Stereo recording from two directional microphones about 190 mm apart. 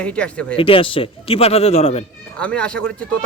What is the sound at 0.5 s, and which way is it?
Speech, 30° left (ahead or behind).